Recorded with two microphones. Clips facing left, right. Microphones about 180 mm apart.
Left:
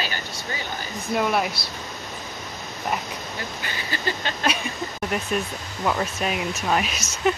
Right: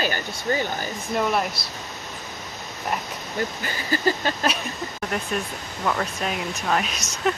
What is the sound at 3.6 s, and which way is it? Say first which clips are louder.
Speech: right 5 dB; 40° right (ahead or behind).